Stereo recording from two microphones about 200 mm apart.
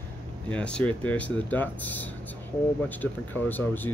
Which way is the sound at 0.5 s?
5° left (ahead or behind).